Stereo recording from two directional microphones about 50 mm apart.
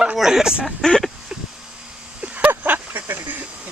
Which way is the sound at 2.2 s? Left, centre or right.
Right.